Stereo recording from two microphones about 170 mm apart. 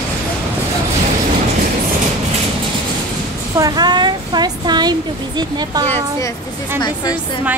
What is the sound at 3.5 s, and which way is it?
Speech, 20° right (ahead or behind).